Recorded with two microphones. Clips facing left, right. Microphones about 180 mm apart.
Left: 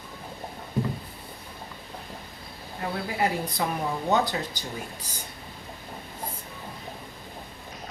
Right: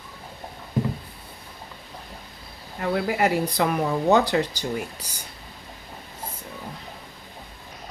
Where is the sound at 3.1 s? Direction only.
75° right (ahead or behind).